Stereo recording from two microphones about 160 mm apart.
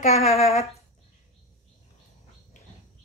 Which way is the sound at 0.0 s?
40° left (ahead or behind).